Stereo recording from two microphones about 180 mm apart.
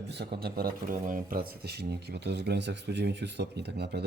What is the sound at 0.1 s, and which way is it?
Speech, 65° right (ahead or behind).